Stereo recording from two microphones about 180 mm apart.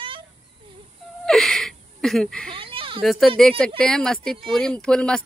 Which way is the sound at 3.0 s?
Centre (ahead or behind).